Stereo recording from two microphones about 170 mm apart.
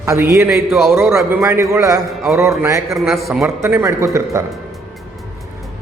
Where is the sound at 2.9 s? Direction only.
Centre (ahead or behind).